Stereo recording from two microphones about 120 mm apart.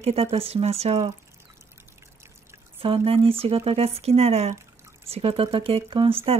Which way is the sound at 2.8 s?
50° right (ahead or behind).